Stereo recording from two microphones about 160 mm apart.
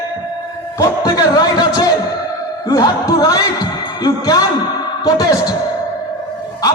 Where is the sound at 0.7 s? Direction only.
20° left (ahead or behind).